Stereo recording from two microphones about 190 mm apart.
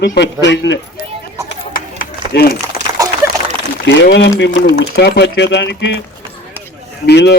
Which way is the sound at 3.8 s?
65° left (ahead or behind).